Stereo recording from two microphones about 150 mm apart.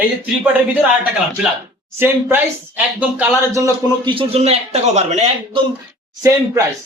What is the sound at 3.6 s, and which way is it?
Speech, 35° right (ahead or behind).